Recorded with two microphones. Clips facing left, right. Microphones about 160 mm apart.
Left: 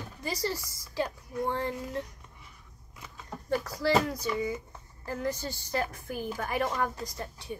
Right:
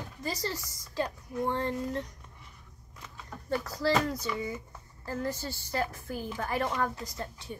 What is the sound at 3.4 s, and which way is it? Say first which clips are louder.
A woman's voice: left 1 dB; 15° left (ahead or behind).